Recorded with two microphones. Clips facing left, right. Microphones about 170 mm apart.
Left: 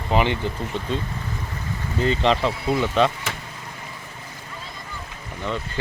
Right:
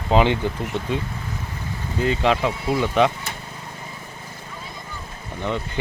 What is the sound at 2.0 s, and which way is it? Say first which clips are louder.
Speech: even; 10° right (ahead or behind).